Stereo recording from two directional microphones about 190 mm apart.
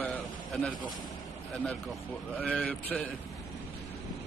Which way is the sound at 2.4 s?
5° left (ahead or behind).